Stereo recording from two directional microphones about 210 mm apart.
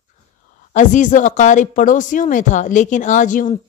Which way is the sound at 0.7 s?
35° left (ahead or behind).